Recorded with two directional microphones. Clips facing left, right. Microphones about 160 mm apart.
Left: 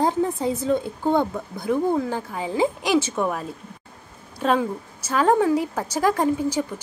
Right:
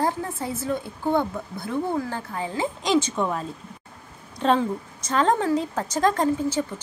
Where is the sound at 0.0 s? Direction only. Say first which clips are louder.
Left 5 dB; 20° left (ahead or behind).